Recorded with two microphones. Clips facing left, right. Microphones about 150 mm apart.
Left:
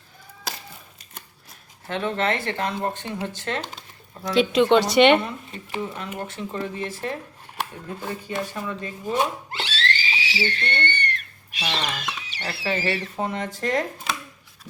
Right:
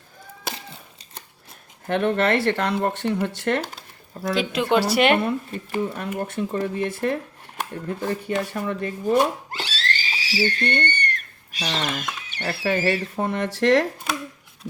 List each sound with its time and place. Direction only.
0.4 s a sound: 25° right (ahead or behind)
1.9 s speech: 55° right (ahead or behind)
4.4 s a woman's voice: 5° right (ahead or behind)
5.7 s speech: 50° right (ahead or behind)
8.2 s speech: 55° right (ahead or behind); by 13.8 s 75° right (ahead or behind)